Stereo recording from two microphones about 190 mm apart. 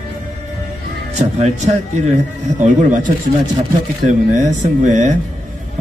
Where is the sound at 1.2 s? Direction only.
35° right (ahead or behind).